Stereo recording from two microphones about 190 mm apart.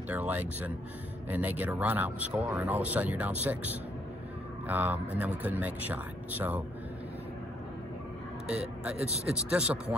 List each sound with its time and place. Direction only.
0.1 s speech: 10° right (ahead or behind)
8.5 s speech: 5° right (ahead or behind)